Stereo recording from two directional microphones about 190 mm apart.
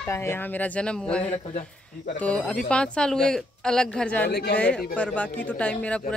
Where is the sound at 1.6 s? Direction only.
40° left (ahead or behind).